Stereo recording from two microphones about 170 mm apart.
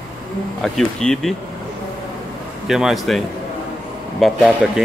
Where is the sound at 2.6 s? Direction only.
Centre (ahead or behind).